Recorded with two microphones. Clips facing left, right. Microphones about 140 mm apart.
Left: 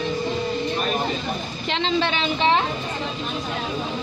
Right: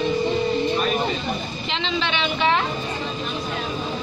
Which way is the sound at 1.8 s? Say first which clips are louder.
Left 3 dB; 35° left (ahead or behind).